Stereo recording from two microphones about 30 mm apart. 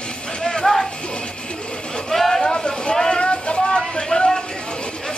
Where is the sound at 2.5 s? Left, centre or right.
Left.